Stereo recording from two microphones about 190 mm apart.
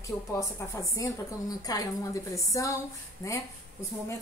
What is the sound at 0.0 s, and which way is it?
A woman's voice, 15° left (ahead or behind).